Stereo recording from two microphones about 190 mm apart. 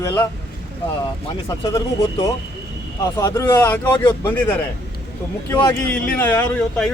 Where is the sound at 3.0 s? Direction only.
15° left (ahead or behind).